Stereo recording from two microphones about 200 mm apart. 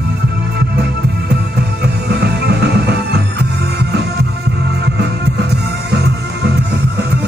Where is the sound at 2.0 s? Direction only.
55° right (ahead or behind).